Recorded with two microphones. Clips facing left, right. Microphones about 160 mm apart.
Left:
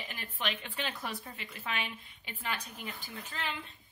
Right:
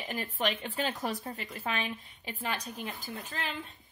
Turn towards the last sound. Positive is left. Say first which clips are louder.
# right 2 dB
turn(degrees=-40)  # may be behind; listen again after turning